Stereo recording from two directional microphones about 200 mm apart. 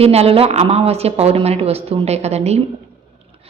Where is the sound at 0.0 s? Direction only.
30° right (ahead or behind).